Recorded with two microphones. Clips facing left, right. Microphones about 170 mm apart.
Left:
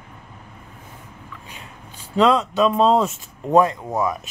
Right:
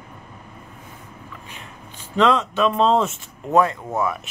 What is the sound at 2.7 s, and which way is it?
Speech, 10° left (ahead or behind).